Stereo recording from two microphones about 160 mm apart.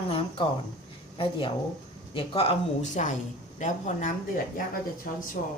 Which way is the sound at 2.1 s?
35° left (ahead or behind).